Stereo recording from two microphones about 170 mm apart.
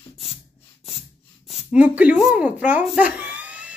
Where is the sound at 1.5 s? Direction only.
5° right (ahead or behind).